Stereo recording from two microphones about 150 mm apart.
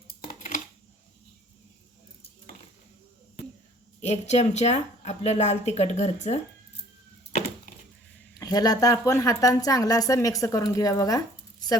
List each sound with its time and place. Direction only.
0.3 s a sound: 60° left (ahead or behind)
4.0 s a woman's voice: 50° left (ahead or behind)
8.4 s a woman's voice: 25° left (ahead or behind)